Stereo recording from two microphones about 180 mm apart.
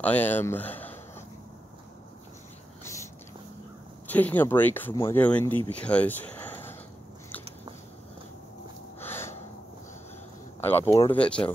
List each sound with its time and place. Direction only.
0.0 s speech: 10° left (ahead or behind)
2.8 s a sound: 15° left (ahead or behind)
4.1 s speech: 10° left (ahead or behind)
9.0 s gasp: 10° left (ahead or behind)
10.6 s speech: 10° left (ahead or behind)